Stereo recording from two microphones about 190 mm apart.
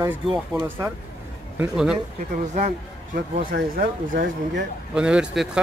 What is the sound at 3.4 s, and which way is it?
Speech, 50° right (ahead or behind).